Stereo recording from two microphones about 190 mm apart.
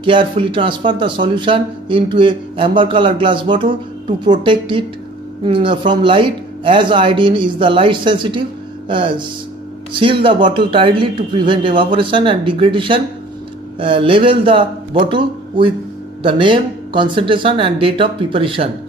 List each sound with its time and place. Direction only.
0.0 s speech: 25° right (ahead or behind)
10.2 s speech: 25° right (ahead or behind)
16.2 s speech: 25° right (ahead or behind)